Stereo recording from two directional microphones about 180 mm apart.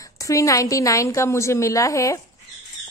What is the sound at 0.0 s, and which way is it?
A woman's voice, 20° left (ahead or behind).